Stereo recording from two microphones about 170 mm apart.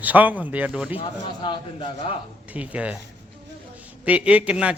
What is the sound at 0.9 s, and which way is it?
A man's voice, 25° left (ahead or behind).